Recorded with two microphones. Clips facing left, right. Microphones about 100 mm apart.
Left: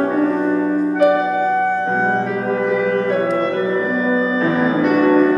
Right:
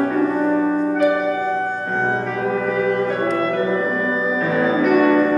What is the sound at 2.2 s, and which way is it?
Music, 10° left (ahead or behind).